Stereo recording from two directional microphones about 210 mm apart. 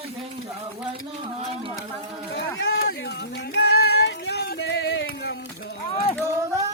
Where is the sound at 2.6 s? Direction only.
45° left (ahead or behind).